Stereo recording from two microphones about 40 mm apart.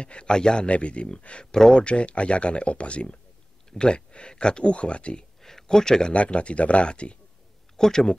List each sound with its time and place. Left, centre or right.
0.0 s speech: left
0.7 s speech: left
1.4 s speech: centre
1.8 s speech: left
5.4 s speech: centre
6.1 s speech: left
7.7 s speech: centre